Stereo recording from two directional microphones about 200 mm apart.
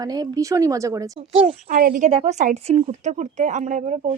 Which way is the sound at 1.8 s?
45° right (ahead or behind).